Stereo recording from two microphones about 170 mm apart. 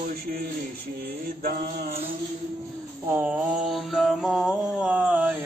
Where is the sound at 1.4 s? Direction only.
60° right (ahead or behind).